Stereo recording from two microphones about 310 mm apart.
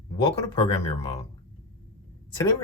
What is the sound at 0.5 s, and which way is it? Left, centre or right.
Speech, centre.